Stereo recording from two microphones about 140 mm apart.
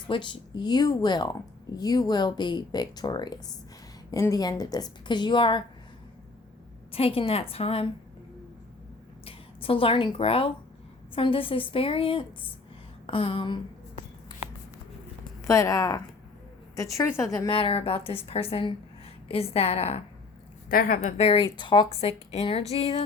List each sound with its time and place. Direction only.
0.1 s a woman's voice: 35° left (ahead or behind)
6.9 s a woman's voice: 45° left (ahead or behind)
9.2 s speech: 40° left (ahead or behind)
13.1 s a sound: 40° left (ahead or behind)
15.4 s a woman's voice: 20° left (ahead or behind)
17.5 s a woman's voice: 40° left (ahead or behind)
20.7 s a woman's voice: 90° left
21.0 s a woman's voice: 45° left (ahead or behind)